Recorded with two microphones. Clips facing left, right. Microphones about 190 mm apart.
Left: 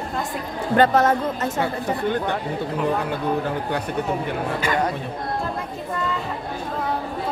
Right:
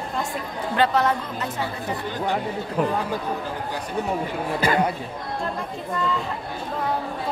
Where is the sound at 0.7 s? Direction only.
45° left (ahead or behind).